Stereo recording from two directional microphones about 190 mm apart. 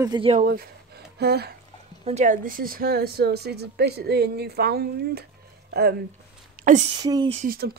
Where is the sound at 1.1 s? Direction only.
55° right (ahead or behind).